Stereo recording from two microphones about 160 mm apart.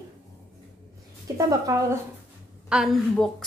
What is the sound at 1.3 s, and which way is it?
Speech, 20° right (ahead or behind).